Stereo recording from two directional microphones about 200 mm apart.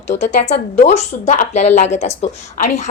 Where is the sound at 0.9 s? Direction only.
35° left (ahead or behind).